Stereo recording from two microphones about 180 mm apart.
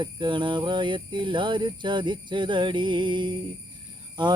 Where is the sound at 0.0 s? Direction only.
25° right (ahead or behind).